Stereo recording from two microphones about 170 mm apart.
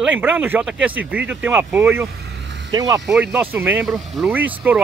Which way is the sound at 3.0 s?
Centre (ahead or behind).